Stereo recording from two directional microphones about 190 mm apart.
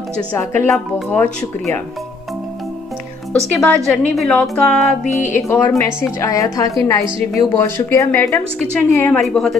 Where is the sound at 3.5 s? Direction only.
5° left (ahead or behind).